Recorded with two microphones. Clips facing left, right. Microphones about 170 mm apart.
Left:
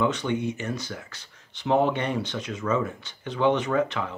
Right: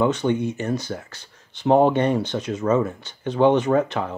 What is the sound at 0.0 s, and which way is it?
Speech, 40° right (ahead or behind).